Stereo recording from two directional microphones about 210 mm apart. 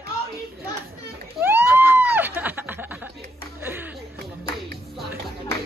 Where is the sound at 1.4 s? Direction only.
10° right (ahead or behind).